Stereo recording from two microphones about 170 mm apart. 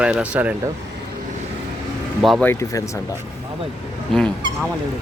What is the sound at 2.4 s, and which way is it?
Speech, 15° left (ahead or behind).